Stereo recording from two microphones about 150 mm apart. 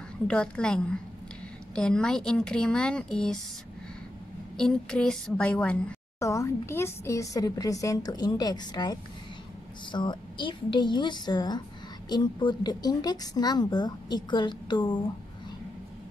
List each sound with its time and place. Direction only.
0.3 s a woman's voice: 5° left (ahead or behind)
4.6 s a woman's voice: 5° left (ahead or behind)
6.1 s a woman's voice: 20° left (ahead or behind)